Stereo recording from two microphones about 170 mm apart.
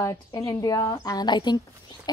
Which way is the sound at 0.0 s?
20° left (ahead or behind).